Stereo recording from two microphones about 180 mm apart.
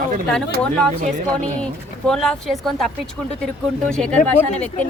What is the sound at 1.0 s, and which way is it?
Speech, 40° right (ahead or behind).